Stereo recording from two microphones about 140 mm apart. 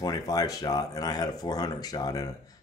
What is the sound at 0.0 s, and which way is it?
Speech, 25° left (ahead or behind).